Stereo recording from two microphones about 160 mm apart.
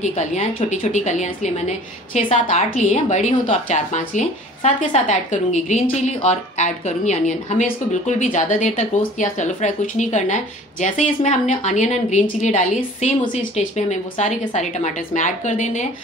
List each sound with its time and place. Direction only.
0.0 s a woman's voice: 45° left (ahead or behind)